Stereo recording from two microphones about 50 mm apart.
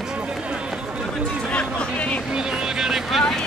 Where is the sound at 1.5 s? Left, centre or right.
Left.